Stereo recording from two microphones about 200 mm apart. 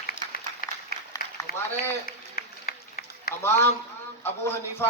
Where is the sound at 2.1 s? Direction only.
50° left (ahead or behind).